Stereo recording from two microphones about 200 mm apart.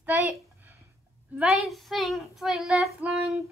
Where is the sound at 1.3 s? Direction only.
Centre (ahead or behind).